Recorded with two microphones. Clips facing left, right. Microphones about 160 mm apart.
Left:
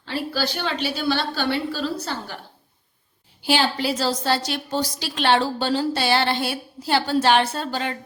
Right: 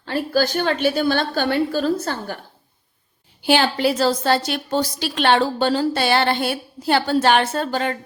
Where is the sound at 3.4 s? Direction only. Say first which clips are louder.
Right 4 dB; 55° right (ahead or behind).